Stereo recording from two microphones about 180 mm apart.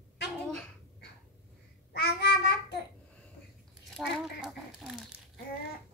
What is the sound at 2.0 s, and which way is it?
Child singing, 65° left (ahead or behind).